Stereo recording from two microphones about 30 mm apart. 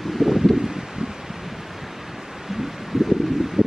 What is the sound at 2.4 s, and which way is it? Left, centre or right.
Rustling leaves, centre.